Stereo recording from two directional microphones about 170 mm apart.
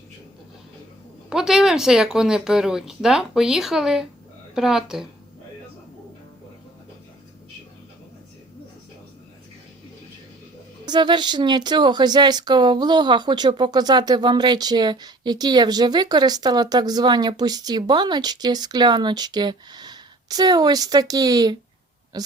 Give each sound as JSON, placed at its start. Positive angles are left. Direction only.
{"t": 1.3, "sound": "speech", "side_deg": 0}
{"t": 10.8, "sound": "speech", "side_deg": -25}